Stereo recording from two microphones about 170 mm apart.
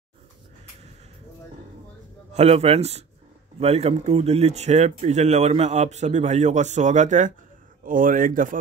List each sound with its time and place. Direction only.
2.3 s speech: 35° right (ahead or behind); by 8.5 s 55° right (ahead or behind)